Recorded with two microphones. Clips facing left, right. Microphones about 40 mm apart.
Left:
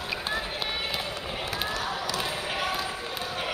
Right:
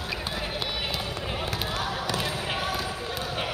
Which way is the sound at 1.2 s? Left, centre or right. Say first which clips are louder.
Right 2 dB; centre.